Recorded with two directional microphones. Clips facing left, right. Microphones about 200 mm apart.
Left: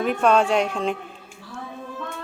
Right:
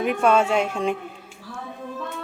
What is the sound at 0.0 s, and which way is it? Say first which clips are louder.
Speech: even; 10° right (ahead or behind).